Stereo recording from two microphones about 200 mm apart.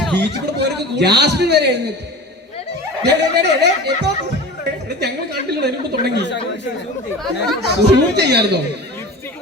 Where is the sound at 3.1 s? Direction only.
55° right (ahead or behind).